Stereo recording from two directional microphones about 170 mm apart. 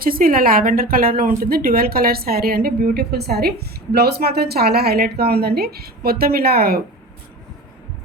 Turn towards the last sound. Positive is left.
turn(degrees=-65)  # may be behind; listen again after turning